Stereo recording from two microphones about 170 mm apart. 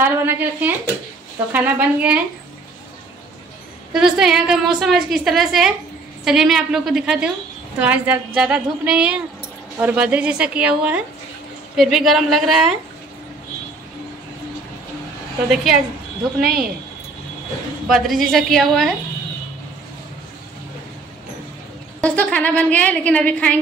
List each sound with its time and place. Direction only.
0.0 s a woman's voice: 10° right (ahead or behind)
3.9 s a woman's voice: 5° right (ahead or behind)
15.5 s a woman's voice: centre (ahead or behind)
16.3 s speech: 65° right (ahead or behind)
17.8 s a woman's voice: centre (ahead or behind)
22.0 s a woman's voice: 10° left (ahead or behind)